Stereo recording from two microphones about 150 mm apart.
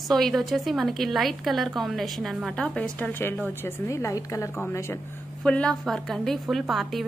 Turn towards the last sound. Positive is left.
turn(degrees=0)  # may be behind; listen again after turning